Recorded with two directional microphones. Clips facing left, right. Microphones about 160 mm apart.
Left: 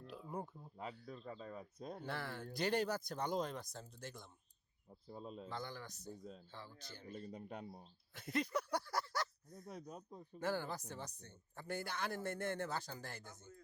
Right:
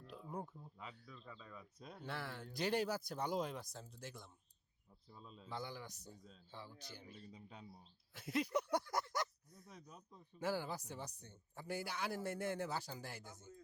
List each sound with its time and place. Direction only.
0.1 s a sound: centre (ahead or behind)
1.0 s speech: 45° left (ahead or behind)
2.0 s speech: centre (ahead or behind)
4.9 s speech: 40° left (ahead or behind)
5.5 s speech: 10° right (ahead or behind)
6.1 s speech: 45° left (ahead or behind)
6.5 s speech: 15° right (ahead or behind)
7.1 s speech: 60° left (ahead or behind)
8.1 s speech: 5° right (ahead or behind)
8.5 s speech: 20° right (ahead or behind)
9.6 s speech: 55° left (ahead or behind)
10.4 s speech: 10° right (ahead or behind)